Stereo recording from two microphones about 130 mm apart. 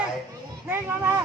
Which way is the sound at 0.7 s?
20° right (ahead or behind).